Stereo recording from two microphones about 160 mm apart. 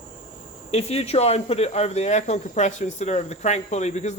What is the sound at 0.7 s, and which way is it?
Speech, 40° left (ahead or behind).